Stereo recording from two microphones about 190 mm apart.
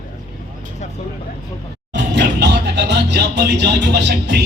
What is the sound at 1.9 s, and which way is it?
Music, 65° right (ahead or behind).